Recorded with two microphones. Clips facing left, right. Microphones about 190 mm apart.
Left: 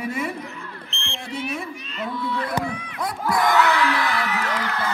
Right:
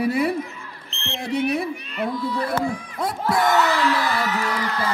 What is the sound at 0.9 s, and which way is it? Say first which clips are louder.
Smoke detector: right 7 dB; 40° right (ahead or behind).